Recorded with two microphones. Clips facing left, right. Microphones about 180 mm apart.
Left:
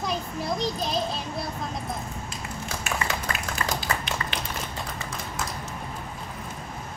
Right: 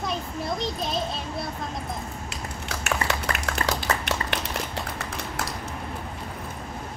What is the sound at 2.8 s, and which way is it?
Clapping, 70° right (ahead or behind).